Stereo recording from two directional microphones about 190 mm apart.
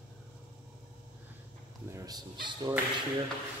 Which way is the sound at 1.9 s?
20° right (ahead or behind).